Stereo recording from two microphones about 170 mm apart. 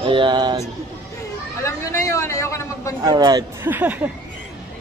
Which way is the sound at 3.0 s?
25° right (ahead or behind).